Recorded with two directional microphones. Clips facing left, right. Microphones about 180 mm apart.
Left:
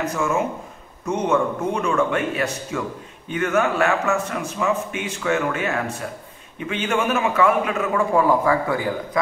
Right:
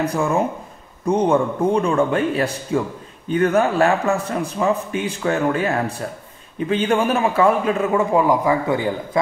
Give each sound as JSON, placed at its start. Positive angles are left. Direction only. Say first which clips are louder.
{"t": 0.0, "sound": "a man's voice", "louder": "right 3 dB", "side_deg": -35}